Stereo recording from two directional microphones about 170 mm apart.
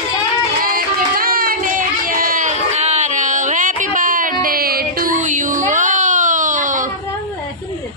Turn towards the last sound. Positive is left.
turn(degrees=-50)  # may be behind; listen again after turning